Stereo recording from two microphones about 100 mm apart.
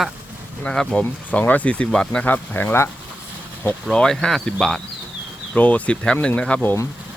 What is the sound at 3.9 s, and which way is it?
Speech, 5° left (ahead or behind).